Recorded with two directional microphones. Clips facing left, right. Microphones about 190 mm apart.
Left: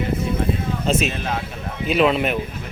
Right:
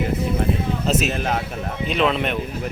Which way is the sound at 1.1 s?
40° right (ahead or behind).